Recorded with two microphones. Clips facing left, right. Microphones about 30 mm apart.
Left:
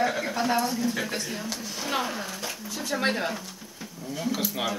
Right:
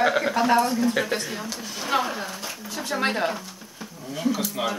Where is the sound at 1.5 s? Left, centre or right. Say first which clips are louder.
Right 6 dB; centre.